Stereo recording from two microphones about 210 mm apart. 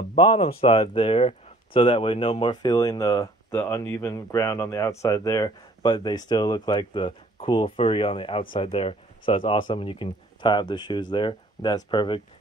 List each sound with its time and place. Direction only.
0.1 s speech: 25° left (ahead or behind)